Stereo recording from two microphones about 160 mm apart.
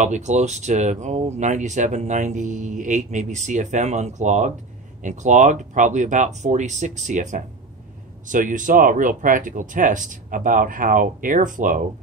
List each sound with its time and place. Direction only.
0.0 s speech: 50° right (ahead or behind)